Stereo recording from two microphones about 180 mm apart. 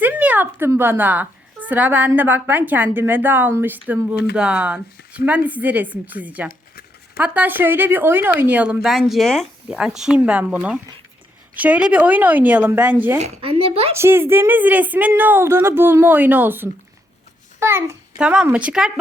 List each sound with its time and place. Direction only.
0.0 s a woman's voice: 10° right (ahead or behind)
6.5 s a sound: 60° left (ahead or behind)
7.2 s a woman's voice: 10° right (ahead or behind)
13.1 s speech: 40° right (ahead or behind)
13.9 s a woman's voice: 15° right (ahead or behind)